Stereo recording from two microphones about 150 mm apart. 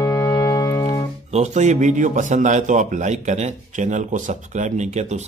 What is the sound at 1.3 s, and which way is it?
A man's voice, 50° right (ahead or behind).